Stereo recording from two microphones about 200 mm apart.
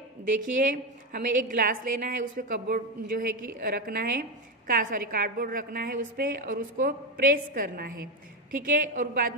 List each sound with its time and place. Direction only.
1.1 s a woman's voice: 45° right (ahead or behind)